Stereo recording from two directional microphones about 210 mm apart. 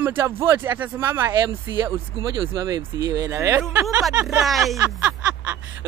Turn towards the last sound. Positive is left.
turn(degrees=-5)  # may be behind; listen again after turning